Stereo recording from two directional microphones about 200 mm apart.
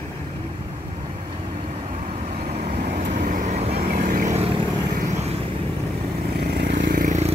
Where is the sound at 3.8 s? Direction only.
50° right (ahead or behind); by 5.4 s 30° right (ahead or behind).